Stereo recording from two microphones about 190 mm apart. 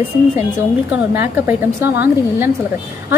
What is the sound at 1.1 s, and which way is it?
A woman's voice, 10° right (ahead or behind).